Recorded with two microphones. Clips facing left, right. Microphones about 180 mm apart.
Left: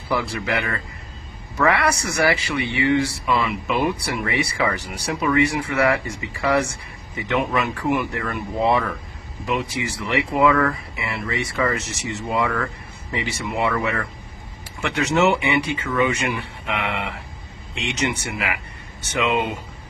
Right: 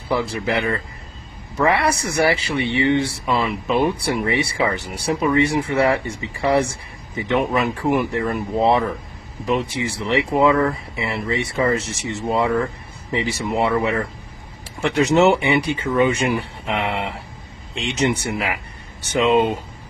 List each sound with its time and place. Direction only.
0.1 s speech: 30° right (ahead or behind)